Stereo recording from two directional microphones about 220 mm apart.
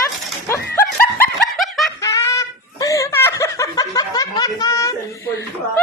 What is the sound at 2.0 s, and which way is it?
Snicker, 15° left (ahead or behind).